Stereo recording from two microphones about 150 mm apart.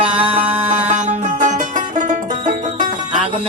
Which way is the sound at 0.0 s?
40° right (ahead or behind).